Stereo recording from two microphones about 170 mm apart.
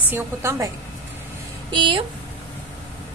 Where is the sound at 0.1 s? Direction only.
15° right (ahead or behind).